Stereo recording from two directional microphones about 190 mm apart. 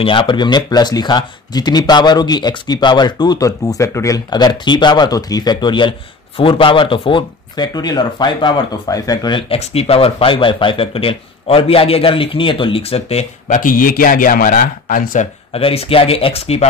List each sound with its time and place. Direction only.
0.0 s speech: 25° left (ahead or behind); by 15.2 s 45° left (ahead or behind)
15.5 s speech: 30° left (ahead or behind)